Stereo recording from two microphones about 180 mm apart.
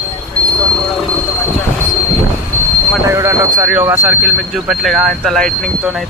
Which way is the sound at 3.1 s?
15° right (ahead or behind).